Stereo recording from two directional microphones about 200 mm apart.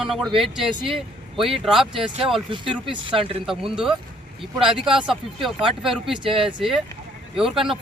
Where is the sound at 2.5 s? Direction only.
25° right (ahead or behind).